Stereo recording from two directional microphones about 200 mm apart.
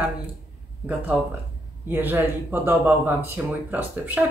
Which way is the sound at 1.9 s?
10° right (ahead or behind).